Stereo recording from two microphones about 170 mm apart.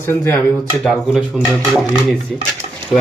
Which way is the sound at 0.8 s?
Centre (ahead or behind).